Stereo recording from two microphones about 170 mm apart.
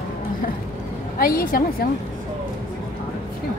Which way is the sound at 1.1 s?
60° left (ahead or behind).